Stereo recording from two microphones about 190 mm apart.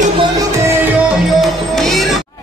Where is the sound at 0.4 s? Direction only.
15° right (ahead or behind).